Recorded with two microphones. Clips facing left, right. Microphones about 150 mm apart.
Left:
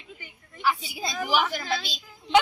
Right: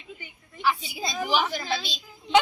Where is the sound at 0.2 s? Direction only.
Centre (ahead or behind).